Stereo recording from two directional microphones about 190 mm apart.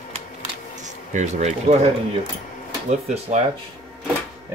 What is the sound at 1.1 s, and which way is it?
Speech, 40° right (ahead or behind).